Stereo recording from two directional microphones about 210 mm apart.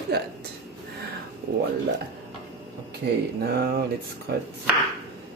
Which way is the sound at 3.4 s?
50° right (ahead or behind).